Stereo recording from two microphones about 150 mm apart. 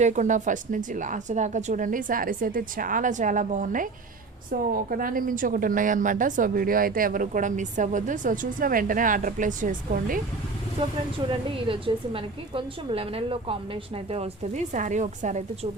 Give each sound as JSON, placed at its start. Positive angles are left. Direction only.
{"t": 0.0, "sound": "a woman's voice", "side_deg": -55}
{"t": 4.7, "sound": "a woman's voice", "side_deg": -70}
{"t": 11.3, "sound": "a woman's voice", "side_deg": -35}